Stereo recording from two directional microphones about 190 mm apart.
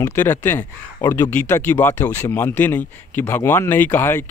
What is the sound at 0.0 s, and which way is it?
Speech, 10° left (ahead or behind).